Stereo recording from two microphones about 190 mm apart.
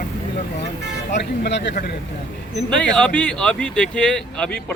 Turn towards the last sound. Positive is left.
turn(degrees=5)  # may be behind; listen again after turning